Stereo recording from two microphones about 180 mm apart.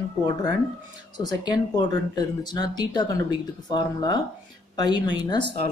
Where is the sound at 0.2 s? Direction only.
25° left (ahead or behind).